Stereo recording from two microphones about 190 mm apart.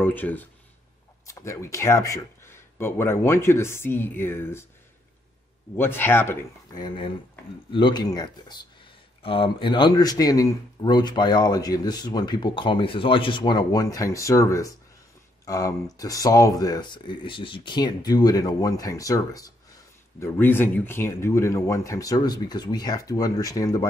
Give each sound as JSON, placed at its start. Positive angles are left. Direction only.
{"t": 0.0, "sound": "speech", "side_deg": 10}
{"t": 5.8, "sound": "a man's voice", "side_deg": 10}